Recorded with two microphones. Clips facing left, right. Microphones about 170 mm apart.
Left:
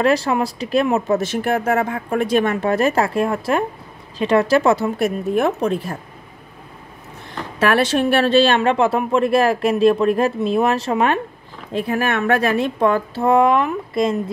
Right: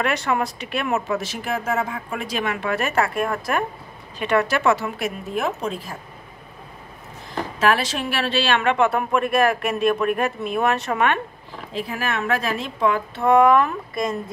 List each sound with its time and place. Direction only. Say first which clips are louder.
0.0 s speech: left 5 dB; 30° left (ahead or behind)
1.0 s speech: left 7 dB; 50° left (ahead or behind); by 4.9 s 30° left (ahead or behind)
4.9 s a woman's voice: left 8 dB; 50° left (ahead or behind)
7.6 s speech: left 5 dB; 55° left (ahead or behind)
8.5 s speech: left 3 dB; 30° left (ahead or behind)
11.7 s a woman's voice: left 6 dB; 55° left (ahead or behind)
13.2 s speech: even; 30° left (ahead or behind)